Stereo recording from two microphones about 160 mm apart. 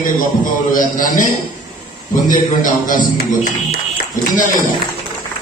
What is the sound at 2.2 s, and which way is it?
Speech, 55° left (ahead or behind).